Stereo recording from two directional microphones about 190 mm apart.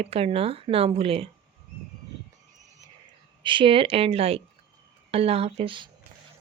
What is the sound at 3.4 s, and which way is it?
Speech, 25° right (ahead or behind).